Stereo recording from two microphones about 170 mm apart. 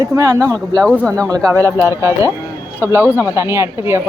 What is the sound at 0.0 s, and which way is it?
Speech, 20° right (ahead or behind).